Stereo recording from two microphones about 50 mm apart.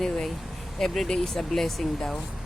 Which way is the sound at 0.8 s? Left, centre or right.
Centre.